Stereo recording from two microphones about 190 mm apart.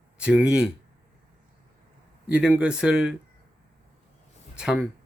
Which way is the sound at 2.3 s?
5° right (ahead or behind).